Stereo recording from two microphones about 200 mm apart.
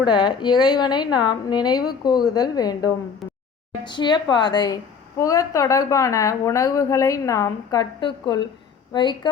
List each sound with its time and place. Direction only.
0.0 s a woman's voice: 20° left (ahead or behind)